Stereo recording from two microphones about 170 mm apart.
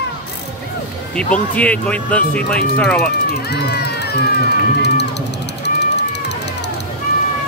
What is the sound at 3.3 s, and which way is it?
Music, 70° left (ahead or behind).